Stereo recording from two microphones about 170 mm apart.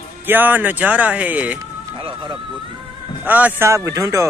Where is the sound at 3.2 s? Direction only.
10° right (ahead or behind).